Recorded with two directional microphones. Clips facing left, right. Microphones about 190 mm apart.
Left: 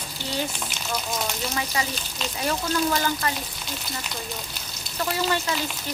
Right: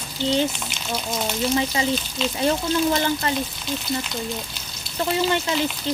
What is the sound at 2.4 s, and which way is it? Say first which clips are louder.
Speech: right 4 dB; 25° right (ahead or behind).